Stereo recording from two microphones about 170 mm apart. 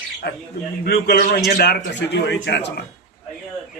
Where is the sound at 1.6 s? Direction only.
85° left.